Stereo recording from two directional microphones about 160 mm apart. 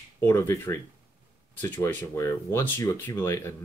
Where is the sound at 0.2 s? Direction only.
15° left (ahead or behind).